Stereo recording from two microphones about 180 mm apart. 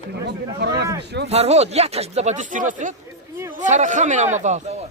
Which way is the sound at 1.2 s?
35° right (ahead or behind).